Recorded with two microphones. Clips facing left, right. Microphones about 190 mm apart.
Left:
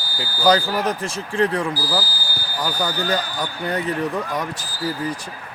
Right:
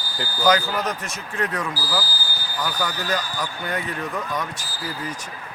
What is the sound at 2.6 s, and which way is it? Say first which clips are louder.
Speech: left 4 dB; 35° left (ahead or behind).